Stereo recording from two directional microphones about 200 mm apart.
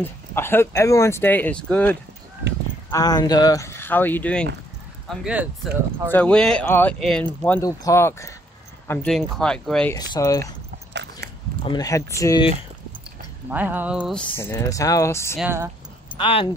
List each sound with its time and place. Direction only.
0.0 s speech: 10° left (ahead or behind)
2.9 s speech: 20° left (ahead or behind); by 5.5 s 5° right (ahead or behind)
6.0 s speech: 10° left (ahead or behind)
10.1 s speech: 15° left (ahead or behind)
10.4 s biting: 55° right (ahead or behind)
11.7 s speech: 15° left (ahead or behind)
13.5 s speech: 10° right (ahead or behind)
14.3 s speech: 10° left (ahead or behind)
15.3 s speech: 10° right (ahead or behind)
16.2 s speech: 25° left (ahead or behind)